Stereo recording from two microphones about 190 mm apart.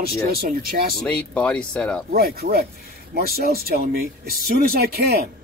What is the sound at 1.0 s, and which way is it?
Speech, 5° left (ahead or behind).